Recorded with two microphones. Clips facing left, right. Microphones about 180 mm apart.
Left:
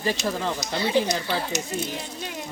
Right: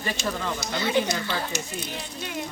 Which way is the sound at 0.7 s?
30° left (ahead or behind).